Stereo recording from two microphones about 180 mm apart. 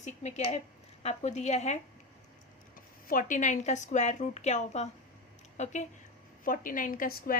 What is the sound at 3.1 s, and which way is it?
A woman's voice, 50° left (ahead or behind).